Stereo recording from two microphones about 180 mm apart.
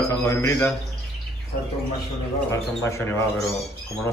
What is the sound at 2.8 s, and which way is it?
Speech, 15° left (ahead or behind).